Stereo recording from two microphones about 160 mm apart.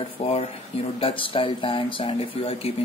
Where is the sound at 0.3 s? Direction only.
35° left (ahead or behind).